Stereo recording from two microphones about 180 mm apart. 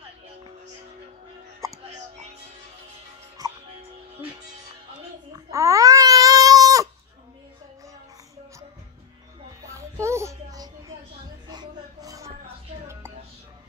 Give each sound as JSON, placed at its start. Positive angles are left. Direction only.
{"t": 3.4, "sound": "music", "side_deg": -20}
{"t": 5.3, "sound": "baby cry", "side_deg": -15}
{"t": 9.6, "sound": "music", "side_deg": -15}